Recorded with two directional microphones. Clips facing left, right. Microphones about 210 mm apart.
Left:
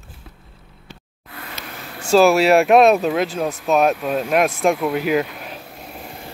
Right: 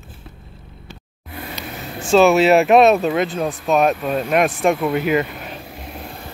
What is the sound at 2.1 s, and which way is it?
Speech, centre (ahead or behind).